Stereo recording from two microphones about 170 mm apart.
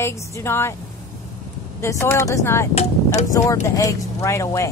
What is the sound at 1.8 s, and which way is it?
A woman's voice, 15° left (ahead or behind).